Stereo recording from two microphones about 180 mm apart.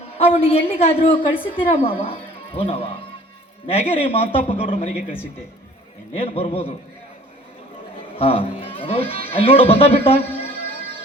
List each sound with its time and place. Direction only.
0.2 s speech: 35° left (ahead or behind)
6.1 s speech: 35° left (ahead or behind)
8.1 s speech: 30° left (ahead or behind)
10.3 s music: 30° left (ahead or behind)